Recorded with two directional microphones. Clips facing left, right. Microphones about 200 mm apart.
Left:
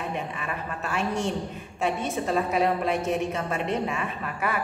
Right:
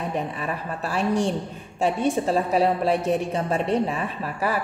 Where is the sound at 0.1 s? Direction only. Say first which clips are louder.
Right 4 dB; 35° right (ahead or behind).